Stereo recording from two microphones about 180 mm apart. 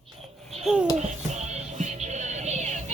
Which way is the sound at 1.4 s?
40° right (ahead or behind).